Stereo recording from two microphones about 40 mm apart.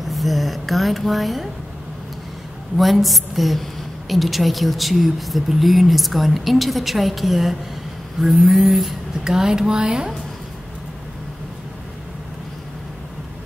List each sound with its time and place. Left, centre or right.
0.0 s speech: centre
2.8 s speech: centre
9.2 s speech: centre